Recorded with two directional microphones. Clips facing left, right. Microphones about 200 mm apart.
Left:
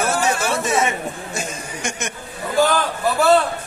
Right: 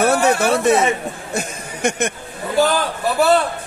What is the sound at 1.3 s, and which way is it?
Speech, 60° right (ahead or behind).